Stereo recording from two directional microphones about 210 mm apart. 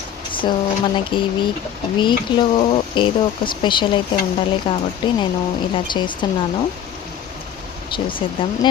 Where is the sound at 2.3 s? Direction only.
25° left (ahead or behind).